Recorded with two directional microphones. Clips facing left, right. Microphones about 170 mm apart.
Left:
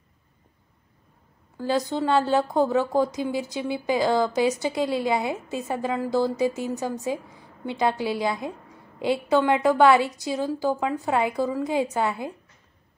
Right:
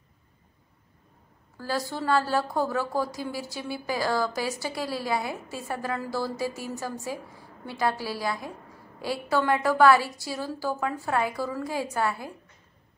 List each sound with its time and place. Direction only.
1.6 s a woman's voice: 20° left (ahead or behind)